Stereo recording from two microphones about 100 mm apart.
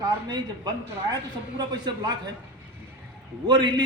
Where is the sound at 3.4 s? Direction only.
45° right (ahead or behind).